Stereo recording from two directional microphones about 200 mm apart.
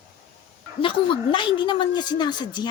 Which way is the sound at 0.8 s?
25° left (ahead or behind).